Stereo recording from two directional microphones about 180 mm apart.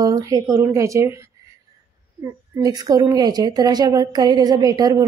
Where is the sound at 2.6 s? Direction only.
20° right (ahead or behind).